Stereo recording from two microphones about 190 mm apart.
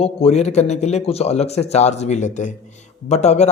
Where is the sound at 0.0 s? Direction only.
30° left (ahead or behind).